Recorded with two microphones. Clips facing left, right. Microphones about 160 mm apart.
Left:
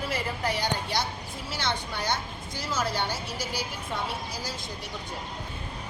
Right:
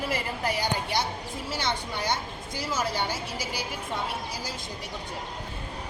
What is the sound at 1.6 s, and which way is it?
A woman's voice, 15° right (ahead or behind).